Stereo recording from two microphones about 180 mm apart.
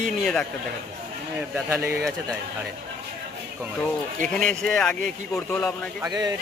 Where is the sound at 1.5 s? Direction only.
15° right (ahead or behind).